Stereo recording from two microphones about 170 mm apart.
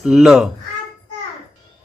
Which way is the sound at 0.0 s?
5° right (ahead or behind).